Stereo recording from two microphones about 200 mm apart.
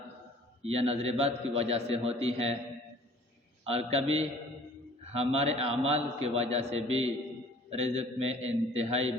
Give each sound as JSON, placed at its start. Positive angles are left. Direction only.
{"t": 0.6, "sound": "a man's voice", "side_deg": -30}
{"t": 3.7, "sound": "a man's voice", "side_deg": -30}